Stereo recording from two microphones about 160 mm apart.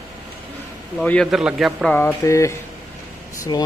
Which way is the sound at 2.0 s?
15° left (ahead or behind).